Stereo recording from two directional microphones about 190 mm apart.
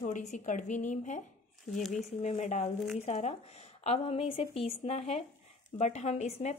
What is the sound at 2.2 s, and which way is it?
A woman's voice, 35° left (ahead or behind).